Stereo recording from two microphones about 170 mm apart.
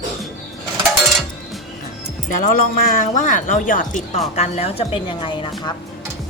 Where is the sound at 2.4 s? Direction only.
55° left (ahead or behind).